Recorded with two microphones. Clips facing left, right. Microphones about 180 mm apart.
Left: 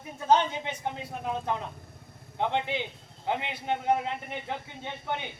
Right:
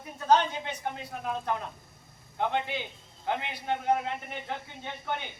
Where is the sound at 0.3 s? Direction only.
20° left (ahead or behind).